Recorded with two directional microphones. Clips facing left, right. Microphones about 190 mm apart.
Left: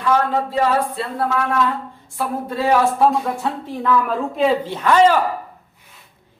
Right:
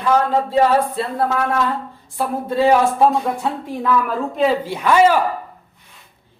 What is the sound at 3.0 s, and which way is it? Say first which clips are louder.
Speech: right 1 dB; 15° right (ahead or behind).